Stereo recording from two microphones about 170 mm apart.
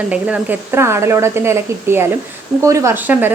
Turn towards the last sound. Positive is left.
turn(degrees=-10)  # may be behind; listen again after turning